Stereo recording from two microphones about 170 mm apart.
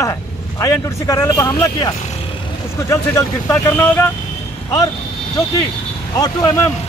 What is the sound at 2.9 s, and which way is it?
Speech, 20° left (ahead or behind).